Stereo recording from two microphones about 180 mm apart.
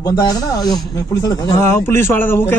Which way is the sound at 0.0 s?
20° left (ahead or behind).